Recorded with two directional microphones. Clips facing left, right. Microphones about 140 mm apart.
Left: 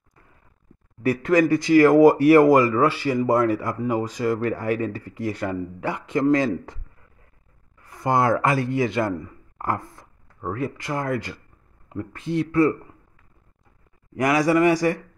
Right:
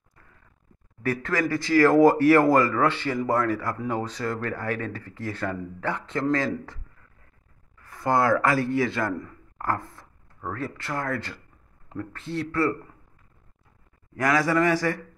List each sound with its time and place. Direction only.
1.0 s speech: 15° left (ahead or behind)
7.8 s speech: 20° left (ahead or behind)
14.1 s speech: 15° left (ahead or behind)